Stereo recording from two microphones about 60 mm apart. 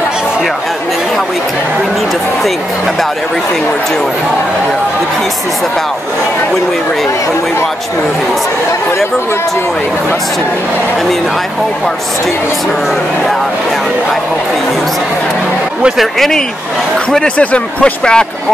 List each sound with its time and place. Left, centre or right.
16.0 s speech: centre